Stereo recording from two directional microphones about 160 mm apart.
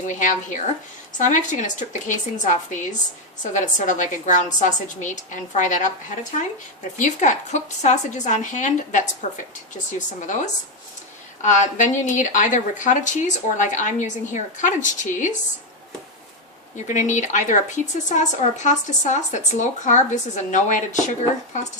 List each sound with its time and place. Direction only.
0.1 s a woman's voice: 50° left (ahead or behind)
10.2 s a woman's voice: 50° left (ahead or behind)
16.7 s a woman's voice: 50° left (ahead or behind)